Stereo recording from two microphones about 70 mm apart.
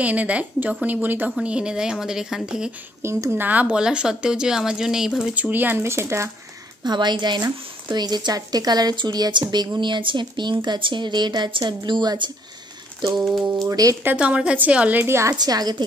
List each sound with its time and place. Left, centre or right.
0.0 s a woman's voice: right
1.4 s speech: centre
3.3 s speech: right; by 5.3 s centre
5.3 s speech: right
6.8 s speech: right
13.6 s speech: right
14.1 s speech: centre
15.0 s speech: right
15.3 s a woman's voice: right